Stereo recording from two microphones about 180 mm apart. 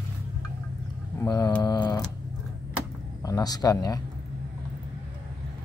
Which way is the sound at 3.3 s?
20° left (ahead or behind).